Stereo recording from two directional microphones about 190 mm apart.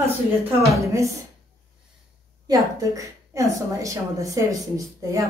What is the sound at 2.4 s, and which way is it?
A woman's voice, 15° right (ahead or behind).